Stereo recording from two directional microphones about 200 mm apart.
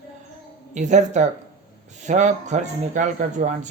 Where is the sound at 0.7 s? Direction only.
35° right (ahead or behind).